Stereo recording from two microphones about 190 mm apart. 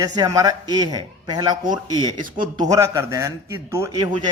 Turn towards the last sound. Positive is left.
turn(degrees=-20)  # may be behind; listen again after turning